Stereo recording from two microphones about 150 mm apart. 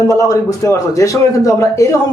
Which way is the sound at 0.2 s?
20° left (ahead or behind).